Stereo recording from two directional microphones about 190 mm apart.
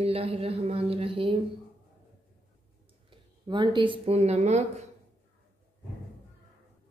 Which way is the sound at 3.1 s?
20° right (ahead or behind).